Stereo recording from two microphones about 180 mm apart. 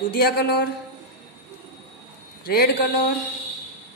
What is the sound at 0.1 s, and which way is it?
Speech, 60° left (ahead or behind).